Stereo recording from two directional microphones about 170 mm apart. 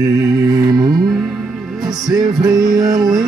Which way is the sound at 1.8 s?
Centre (ahead or behind).